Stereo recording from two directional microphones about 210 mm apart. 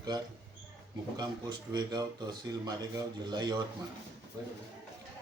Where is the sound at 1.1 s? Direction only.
20° right (ahead or behind).